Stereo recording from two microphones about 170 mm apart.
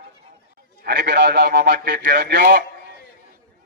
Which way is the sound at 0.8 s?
70° right (ahead or behind).